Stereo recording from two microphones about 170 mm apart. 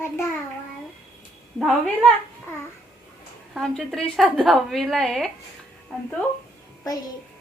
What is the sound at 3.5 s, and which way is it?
A woman's voice, centre (ahead or behind).